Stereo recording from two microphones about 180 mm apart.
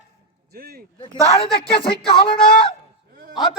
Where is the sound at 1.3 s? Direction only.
30° left (ahead or behind).